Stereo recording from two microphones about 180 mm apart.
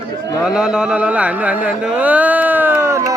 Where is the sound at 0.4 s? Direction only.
5° right (ahead or behind).